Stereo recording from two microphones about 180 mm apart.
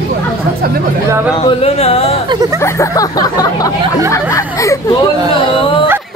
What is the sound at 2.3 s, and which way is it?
Speech, 20° right (ahead or behind).